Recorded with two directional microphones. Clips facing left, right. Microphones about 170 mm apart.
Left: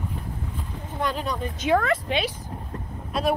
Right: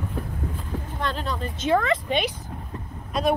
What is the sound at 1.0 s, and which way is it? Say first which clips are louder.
Speech: left 3 dB; 10° left (ahead or behind).